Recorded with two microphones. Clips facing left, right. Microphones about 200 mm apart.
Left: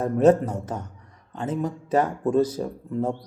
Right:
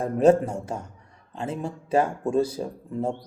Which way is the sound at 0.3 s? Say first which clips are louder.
Even; 10° right (ahead or behind).